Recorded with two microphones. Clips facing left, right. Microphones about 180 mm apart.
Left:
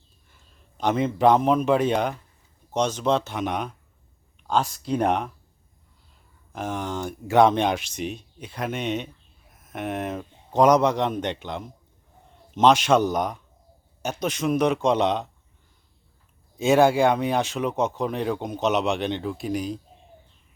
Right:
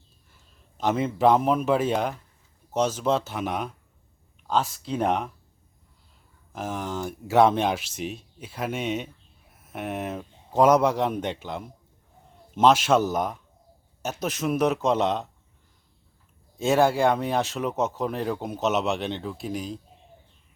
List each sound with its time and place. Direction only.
0.3 s speech: centre (ahead or behind)
6.5 s speech: 5° right (ahead or behind)
16.6 s speech: centre (ahead or behind)